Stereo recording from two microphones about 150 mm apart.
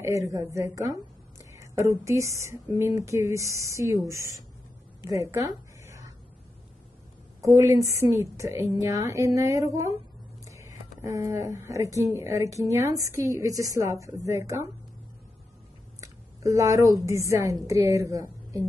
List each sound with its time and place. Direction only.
0.0 s a woman's voice: 20° right (ahead or behind)
5.0 s a sound: 20° right (ahead or behind)
7.4 s a woman's voice: 20° right (ahead or behind)
16.0 s a woman's voice: 20° right (ahead or behind)